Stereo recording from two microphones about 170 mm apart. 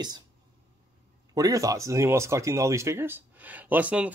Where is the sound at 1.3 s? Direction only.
20° right (ahead or behind).